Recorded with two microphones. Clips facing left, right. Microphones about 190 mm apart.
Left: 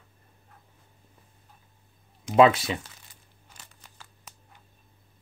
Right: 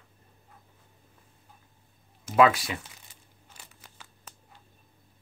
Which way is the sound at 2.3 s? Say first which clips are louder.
Left 3 dB; 25° left (ahead or behind).